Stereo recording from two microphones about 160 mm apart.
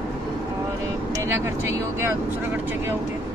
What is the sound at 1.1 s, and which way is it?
Speech, 15° right (ahead or behind).